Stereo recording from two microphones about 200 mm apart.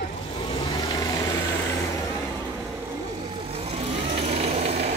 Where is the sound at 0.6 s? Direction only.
15° left (ahead or behind).